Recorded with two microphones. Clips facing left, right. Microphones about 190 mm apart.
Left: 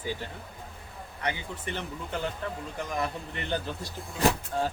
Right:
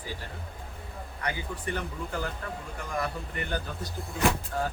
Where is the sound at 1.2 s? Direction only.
25° left (ahead or behind).